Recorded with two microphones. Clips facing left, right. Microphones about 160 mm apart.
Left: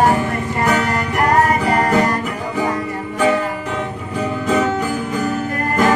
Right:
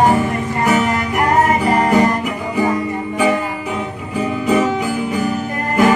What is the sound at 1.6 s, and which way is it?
Music, 20° right (ahead or behind).